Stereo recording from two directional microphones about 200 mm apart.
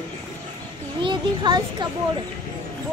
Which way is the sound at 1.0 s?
25° right (ahead or behind).